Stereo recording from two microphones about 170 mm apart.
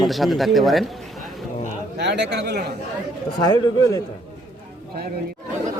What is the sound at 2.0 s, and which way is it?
Speech, 85° right.